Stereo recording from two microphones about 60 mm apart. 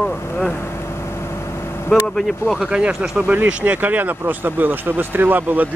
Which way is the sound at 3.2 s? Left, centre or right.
Right.